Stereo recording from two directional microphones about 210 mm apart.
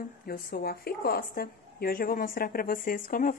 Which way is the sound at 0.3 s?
45° left (ahead or behind).